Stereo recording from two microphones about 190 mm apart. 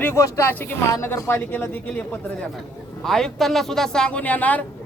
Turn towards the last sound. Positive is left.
turn(degrees=10)  # may be behind; listen again after turning